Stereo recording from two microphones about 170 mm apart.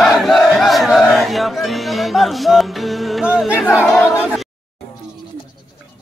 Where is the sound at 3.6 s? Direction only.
15° left (ahead or behind).